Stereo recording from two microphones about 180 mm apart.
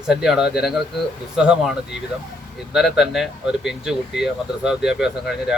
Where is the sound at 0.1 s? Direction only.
Centre (ahead or behind).